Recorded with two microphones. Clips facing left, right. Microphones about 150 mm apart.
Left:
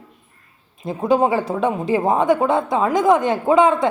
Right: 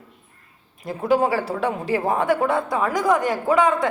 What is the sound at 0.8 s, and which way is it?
A woman's voice, 20° left (ahead or behind).